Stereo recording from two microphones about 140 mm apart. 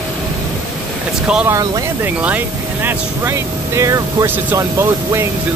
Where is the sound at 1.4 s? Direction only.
20° right (ahead or behind).